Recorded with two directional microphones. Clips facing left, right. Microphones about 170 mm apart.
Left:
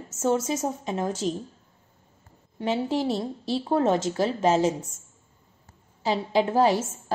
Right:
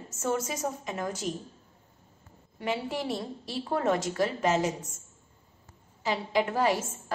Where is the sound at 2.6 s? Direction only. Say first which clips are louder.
Left 6 dB; 25° left (ahead or behind).